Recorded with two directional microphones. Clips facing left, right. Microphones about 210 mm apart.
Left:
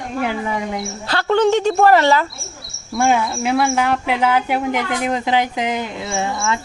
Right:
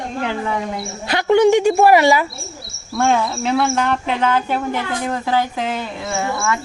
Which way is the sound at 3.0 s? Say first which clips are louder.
Even; 10° left (ahead or behind).